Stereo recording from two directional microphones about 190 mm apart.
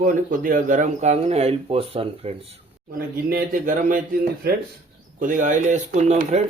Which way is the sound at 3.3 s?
50° right (ahead or behind).